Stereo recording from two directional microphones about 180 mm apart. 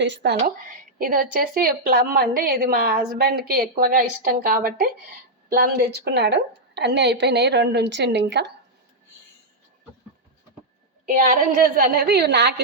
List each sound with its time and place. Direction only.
0.0 s a woman's voice: 70° right (ahead or behind)
0.4 s a woman's voice: 50° right (ahead or behind); by 8.4 s 75° right (ahead or behind)
11.0 s a woman's voice: 50° right (ahead or behind); by 12.6 s 70° right (ahead or behind)